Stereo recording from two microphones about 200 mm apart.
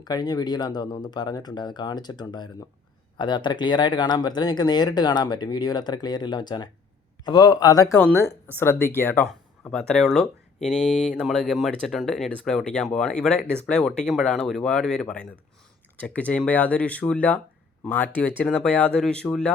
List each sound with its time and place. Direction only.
0.0 s speech: 20° left (ahead or behind); by 19.5 s 5° left (ahead or behind)